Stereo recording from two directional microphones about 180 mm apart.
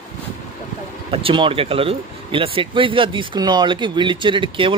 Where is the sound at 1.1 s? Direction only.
30° right (ahead or behind).